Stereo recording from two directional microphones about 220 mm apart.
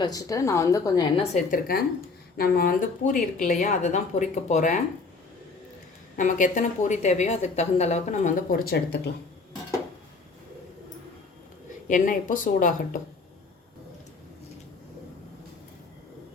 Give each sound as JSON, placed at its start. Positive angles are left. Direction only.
{"t": 0.0, "sound": "a woman's voice", "side_deg": 15}
{"t": 6.1, "sound": "a woman's voice", "side_deg": 35}
{"t": 11.9, "sound": "a woman's voice", "side_deg": 35}